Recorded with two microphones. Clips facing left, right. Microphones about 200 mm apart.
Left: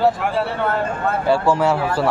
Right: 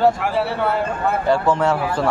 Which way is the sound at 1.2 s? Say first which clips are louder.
Left 1 dB; 5° left (ahead or behind).